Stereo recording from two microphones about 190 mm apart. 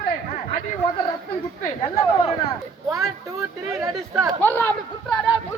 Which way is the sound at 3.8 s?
15° right (ahead or behind).